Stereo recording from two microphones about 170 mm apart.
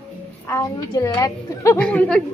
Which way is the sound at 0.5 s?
20° left (ahead or behind).